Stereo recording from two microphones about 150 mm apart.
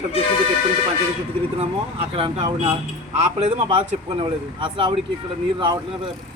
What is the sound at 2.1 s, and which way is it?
Speech, 35° right (ahead or behind).